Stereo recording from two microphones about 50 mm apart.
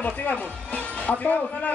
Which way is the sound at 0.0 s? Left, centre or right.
Left.